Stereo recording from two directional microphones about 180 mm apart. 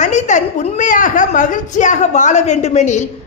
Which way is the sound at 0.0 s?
40° left (ahead or behind).